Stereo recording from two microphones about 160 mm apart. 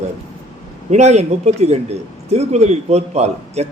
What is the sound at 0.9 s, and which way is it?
A man's voice, 45° right (ahead or behind).